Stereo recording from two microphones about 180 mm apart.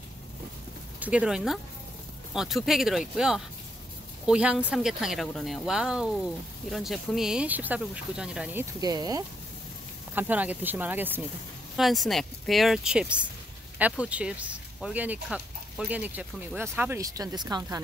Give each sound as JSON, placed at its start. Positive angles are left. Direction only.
{"t": 0.9, "sound": "speech", "side_deg": -10}
{"t": 8.8, "sound": "speech", "side_deg": -20}
{"t": 10.1, "sound": "speech", "side_deg": -10}
{"t": 11.7, "sound": "speech", "side_deg": 0}